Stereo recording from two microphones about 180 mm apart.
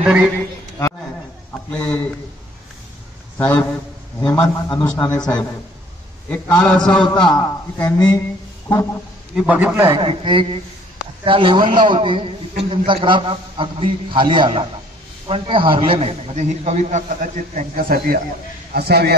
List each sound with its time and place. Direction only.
0.0 s a man's voice: 5° right (ahead or behind)
1.7 s a man's voice: 5° left (ahead or behind)
3.3 s a man's voice: 10° left (ahead or behind)
9.3 s a man's voice: 10° right (ahead or behind)
9.9 s a man's voice: 30° right (ahead or behind); by 19.1 s 60° right (ahead or behind)